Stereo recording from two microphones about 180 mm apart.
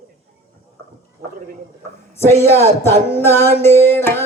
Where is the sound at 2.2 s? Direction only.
15° left (ahead or behind).